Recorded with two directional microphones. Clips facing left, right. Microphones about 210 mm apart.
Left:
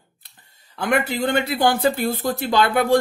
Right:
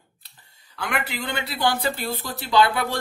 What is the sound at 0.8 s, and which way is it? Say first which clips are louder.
Speech: left 8 dB; 45° left (ahead or behind).